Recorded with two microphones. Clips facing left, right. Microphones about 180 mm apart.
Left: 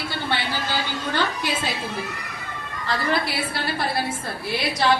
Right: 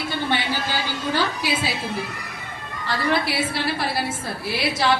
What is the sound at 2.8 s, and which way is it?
A woman's voice, centre (ahead or behind).